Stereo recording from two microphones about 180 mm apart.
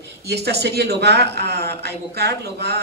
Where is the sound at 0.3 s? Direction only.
65° right (ahead or behind).